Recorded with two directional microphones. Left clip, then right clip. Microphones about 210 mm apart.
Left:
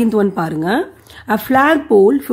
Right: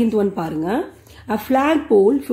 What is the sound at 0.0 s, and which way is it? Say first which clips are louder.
Speech: left 4 dB; 30° left (ahead or behind).